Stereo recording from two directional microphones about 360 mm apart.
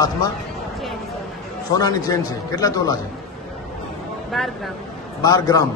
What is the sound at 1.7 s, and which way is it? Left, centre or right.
A man's voice, centre.